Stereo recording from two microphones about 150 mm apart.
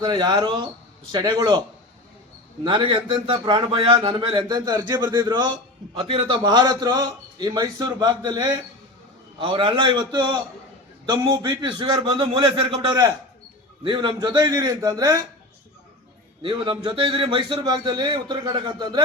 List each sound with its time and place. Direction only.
0.0 s a man's voice: 25° right (ahead or behind)
2.6 s a man's voice: 35° right (ahead or behind)
16.4 s a man's voice: 35° right (ahead or behind)